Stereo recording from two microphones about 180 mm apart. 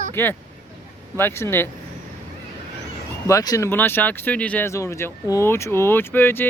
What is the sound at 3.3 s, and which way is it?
Speech, 20° left (ahead or behind).